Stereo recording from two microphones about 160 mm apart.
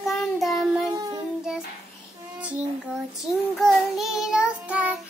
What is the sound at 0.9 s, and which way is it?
Child singing, 25° right (ahead or behind).